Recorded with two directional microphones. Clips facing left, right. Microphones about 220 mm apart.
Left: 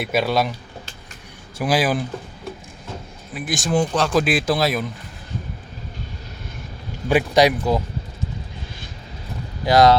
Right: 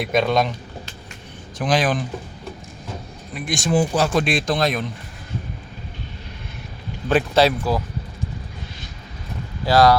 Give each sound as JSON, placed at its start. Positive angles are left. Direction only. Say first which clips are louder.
{"t": 0.0, "sound": "speech", "louder": "right 1 dB", "side_deg": 5}
{"t": 1.5, "sound": "speech", "louder": "even", "side_deg": 10}
{"t": 3.3, "sound": "speech", "louder": "right 1 dB", "side_deg": 5}
{"t": 7.1, "sound": "speech", "louder": "left 1 dB", "side_deg": 15}
{"t": 9.6, "sound": "speech", "louder": "left 1 dB", "side_deg": 20}